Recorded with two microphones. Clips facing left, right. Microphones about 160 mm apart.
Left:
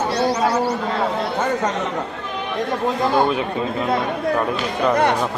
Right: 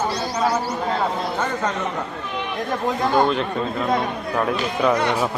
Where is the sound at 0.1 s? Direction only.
60° left (ahead or behind).